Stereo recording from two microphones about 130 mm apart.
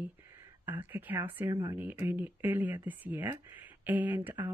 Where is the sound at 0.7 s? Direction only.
15° right (ahead or behind).